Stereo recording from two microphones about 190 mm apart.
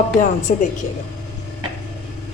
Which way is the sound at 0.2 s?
40° left (ahead or behind).